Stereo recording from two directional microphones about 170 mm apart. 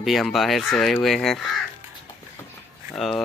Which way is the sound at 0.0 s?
Centre (ahead or behind).